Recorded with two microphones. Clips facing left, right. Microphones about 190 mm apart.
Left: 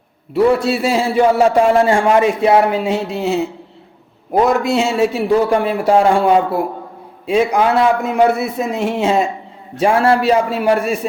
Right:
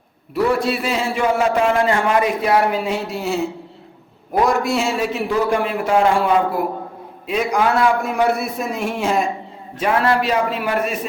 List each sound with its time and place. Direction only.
0.3 s a man's voice: 25° left (ahead or behind)